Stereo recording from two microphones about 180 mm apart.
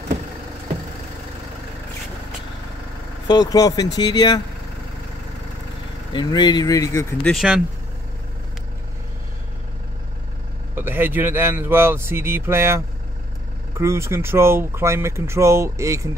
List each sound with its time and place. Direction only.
3.3 s speech: 20° left (ahead or behind)
6.1 s speech: 25° left (ahead or behind)
7.3 s speech: 5° right (ahead or behind)
10.7 s speech: 10° right (ahead or behind)